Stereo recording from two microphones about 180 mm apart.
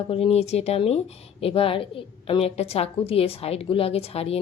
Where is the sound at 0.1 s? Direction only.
30° left (ahead or behind).